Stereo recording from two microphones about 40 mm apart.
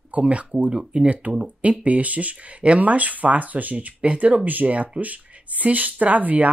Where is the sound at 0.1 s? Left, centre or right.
Right.